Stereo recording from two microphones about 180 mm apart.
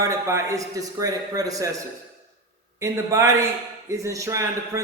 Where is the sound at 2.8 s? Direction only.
15° right (ahead or behind).